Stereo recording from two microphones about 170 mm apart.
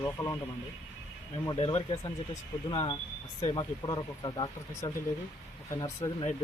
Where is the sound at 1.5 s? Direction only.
40° left (ahead or behind).